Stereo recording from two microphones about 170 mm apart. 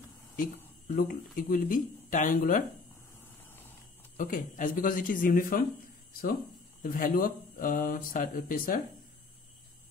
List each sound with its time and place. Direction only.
0.8 s speech: 55° left (ahead or behind)
4.2 s speech: 50° left (ahead or behind)
6.8 s speech: 55° left (ahead or behind)